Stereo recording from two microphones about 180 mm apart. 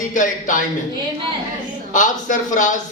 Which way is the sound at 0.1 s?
45° left (ahead or behind).